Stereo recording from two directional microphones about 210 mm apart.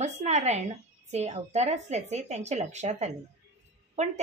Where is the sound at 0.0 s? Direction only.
30° right (ahead or behind).